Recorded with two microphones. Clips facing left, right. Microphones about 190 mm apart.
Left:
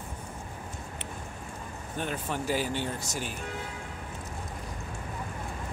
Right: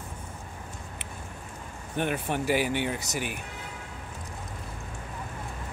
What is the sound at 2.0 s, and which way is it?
Speech, 65° right (ahead or behind).